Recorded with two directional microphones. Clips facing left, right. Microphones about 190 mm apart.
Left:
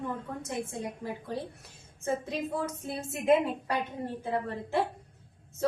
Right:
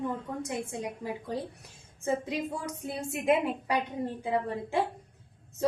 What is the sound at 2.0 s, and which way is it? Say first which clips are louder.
Speech: right 1 dB; 15° right (ahead or behind).